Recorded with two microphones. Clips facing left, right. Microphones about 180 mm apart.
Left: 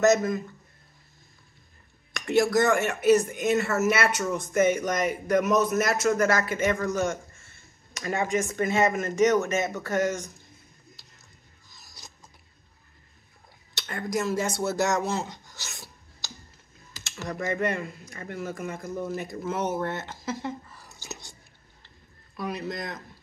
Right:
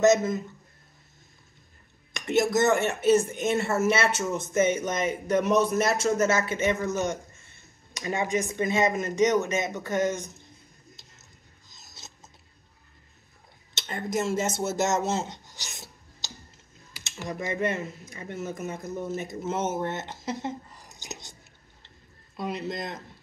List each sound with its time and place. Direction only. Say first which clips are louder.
0.0 s speech: right 1 dB; 20° right (ahead or behind)
2.1 s speech: left 1 dB; 20° right (ahead or behind)
11.7 s filing: even; 20° right (ahead or behind)
13.7 s speech: even; 20° right (ahead or behind)
16.9 s typing: even; 15° right (ahead or behind)
17.6 s speech: even; 20° right (ahead or behind)
22.4 s speech: right 1 dB; 25° right (ahead or behind)